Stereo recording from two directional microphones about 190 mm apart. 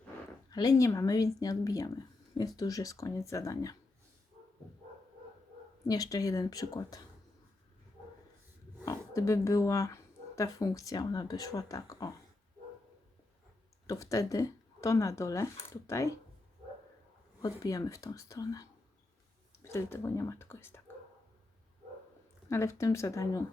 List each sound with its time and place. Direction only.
0.5 s speech: 20° left (ahead or behind)
5.9 s speech: 20° left (ahead or behind)
8.8 s speech: 15° left (ahead or behind)
13.8 s speech: 15° left (ahead or behind)
17.4 s speech: 20° left (ahead or behind)
22.4 s speech: 15° left (ahead or behind)